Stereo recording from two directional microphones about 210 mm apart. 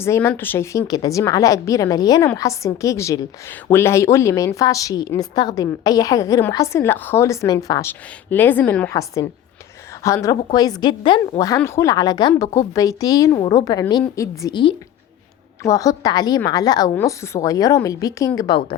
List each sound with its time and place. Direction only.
0.0 s a woman's voice: 10° left (ahead or behind)